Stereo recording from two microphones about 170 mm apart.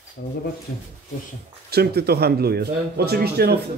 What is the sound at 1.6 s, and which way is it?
Speech, 70° right (ahead or behind).